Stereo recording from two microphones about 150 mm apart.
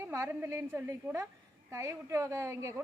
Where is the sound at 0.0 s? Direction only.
20° right (ahead or behind).